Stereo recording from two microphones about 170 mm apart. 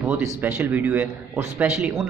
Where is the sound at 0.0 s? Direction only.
15° right (ahead or behind).